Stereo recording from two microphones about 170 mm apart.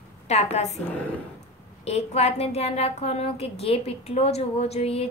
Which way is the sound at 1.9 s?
40° left (ahead or behind).